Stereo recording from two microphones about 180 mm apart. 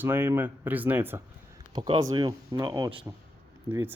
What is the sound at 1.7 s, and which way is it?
Speech, 30° right (ahead or behind).